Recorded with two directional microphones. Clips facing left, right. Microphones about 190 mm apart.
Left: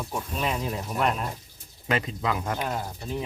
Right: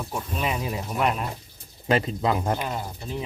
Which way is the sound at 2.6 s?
Centre (ahead or behind).